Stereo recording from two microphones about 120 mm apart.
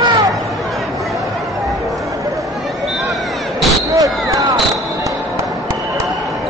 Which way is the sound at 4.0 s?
30° right (ahead or behind).